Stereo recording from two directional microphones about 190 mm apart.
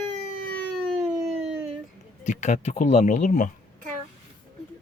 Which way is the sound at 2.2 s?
40° left (ahead or behind).